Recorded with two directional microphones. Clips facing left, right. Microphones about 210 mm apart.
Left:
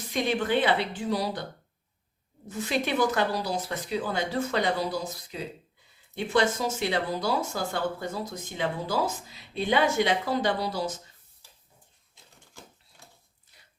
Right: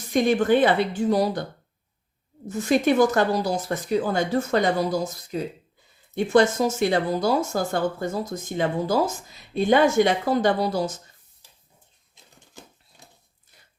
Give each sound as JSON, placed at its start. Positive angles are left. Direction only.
{"t": 0.1, "sound": "speech", "side_deg": -45}
{"t": 2.5, "sound": "speech", "side_deg": -45}
{"t": 12.1, "sound": "a sound", "side_deg": -20}